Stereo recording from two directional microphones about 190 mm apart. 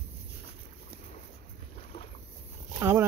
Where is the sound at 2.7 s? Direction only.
15° right (ahead or behind).